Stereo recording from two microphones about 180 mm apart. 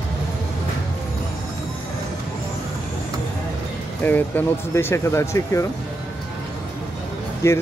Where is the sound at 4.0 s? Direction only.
10° left (ahead or behind).